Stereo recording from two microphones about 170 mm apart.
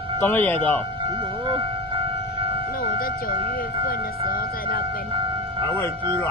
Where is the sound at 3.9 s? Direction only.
60° left (ahead or behind).